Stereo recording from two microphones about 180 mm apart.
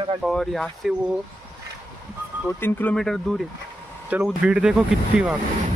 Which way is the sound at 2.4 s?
10° left (ahead or behind).